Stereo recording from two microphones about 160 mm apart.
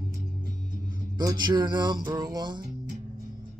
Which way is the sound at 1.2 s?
25° right (ahead or behind).